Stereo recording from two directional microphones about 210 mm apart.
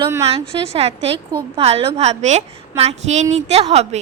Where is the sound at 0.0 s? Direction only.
15° right (ahead or behind).